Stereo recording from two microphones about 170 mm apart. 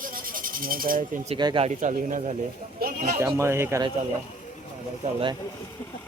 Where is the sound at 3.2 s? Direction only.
15° right (ahead or behind).